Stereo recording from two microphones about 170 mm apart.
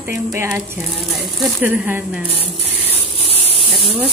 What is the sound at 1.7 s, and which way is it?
Speech, 10° right (ahead or behind).